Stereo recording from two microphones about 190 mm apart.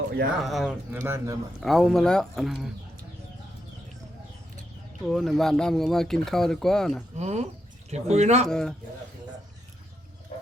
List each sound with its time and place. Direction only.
0.4 s speech: centre (ahead or behind)
1.6 s speech: centre (ahead or behind)
5.0 s speech: centre (ahead or behind)
7.2 s speech: 35° right (ahead or behind)
8.4 s speech: 5° left (ahead or behind)